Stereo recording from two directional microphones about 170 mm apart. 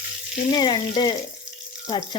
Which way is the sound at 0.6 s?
25° left (ahead or behind).